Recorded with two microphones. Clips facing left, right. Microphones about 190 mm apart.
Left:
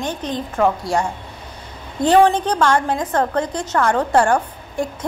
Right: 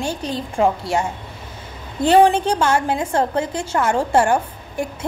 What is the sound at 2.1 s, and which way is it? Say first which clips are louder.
A woman's voice: even; 10° right (ahead or behind).